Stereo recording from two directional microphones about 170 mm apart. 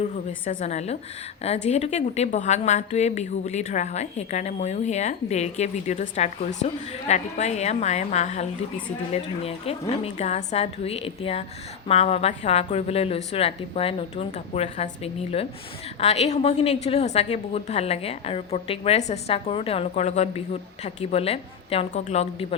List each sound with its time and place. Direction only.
0.6 s a woman's voice: 40° left (ahead or behind)